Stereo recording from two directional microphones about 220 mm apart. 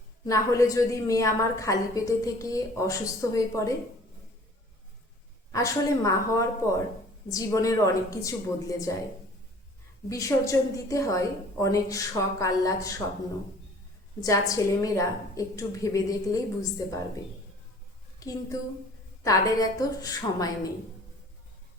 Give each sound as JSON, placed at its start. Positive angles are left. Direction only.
{"t": 0.3, "sound": "a woman's voice", "side_deg": 15}
{"t": 5.5, "sound": "a woman's voice", "side_deg": 15}
{"t": 10.1, "sound": "a woman's voice", "side_deg": 15}
{"t": 14.2, "sound": "a woman's voice", "side_deg": 15}
{"t": 19.2, "sound": "a woman's voice", "side_deg": 15}